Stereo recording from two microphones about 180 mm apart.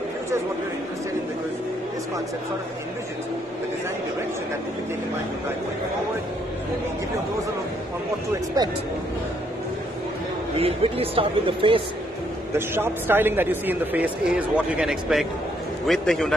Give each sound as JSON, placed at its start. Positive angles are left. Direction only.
{"t": 8.6, "sound": "speech", "side_deg": -20}
{"t": 10.6, "sound": "speech", "side_deg": -30}
{"t": 12.5, "sound": "a man's voice", "side_deg": -10}